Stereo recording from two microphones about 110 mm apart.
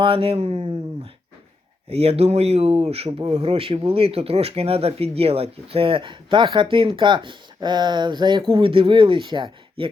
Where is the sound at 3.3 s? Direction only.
65° right (ahead or behind).